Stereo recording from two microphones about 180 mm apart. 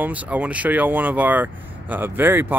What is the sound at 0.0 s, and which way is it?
Speech, 10° right (ahead or behind).